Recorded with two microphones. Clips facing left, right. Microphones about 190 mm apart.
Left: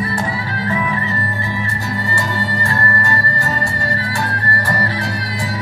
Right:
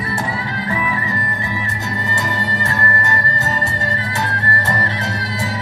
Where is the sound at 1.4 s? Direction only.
20° right (ahead or behind).